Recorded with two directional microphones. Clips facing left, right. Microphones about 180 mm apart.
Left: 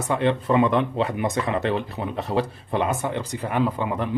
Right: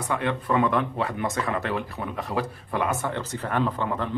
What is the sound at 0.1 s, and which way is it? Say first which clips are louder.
Speech: left 4 dB; 25° left (ahead or behind).